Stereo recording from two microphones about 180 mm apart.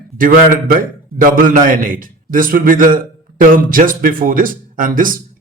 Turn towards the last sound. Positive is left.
turn(degrees=-50)  # may be behind; listen again after turning